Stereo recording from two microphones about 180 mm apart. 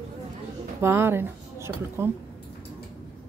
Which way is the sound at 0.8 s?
15° right (ahead or behind).